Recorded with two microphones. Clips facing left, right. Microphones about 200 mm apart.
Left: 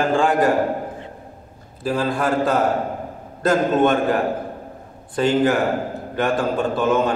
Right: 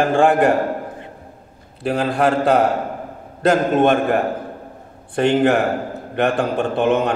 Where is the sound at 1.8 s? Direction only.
70° right (ahead or behind).